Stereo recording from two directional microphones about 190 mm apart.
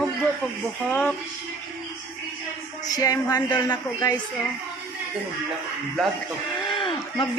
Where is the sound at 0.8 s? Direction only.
5° left (ahead or behind).